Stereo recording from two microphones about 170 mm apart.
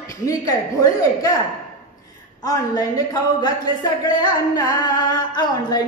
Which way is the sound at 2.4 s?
20° left (ahead or behind).